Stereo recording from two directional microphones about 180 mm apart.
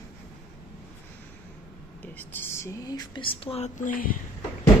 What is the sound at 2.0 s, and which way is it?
Speech, 10° left (ahead or behind).